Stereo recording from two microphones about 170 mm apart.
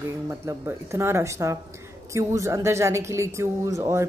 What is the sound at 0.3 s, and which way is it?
Speech, 15° right (ahead or behind).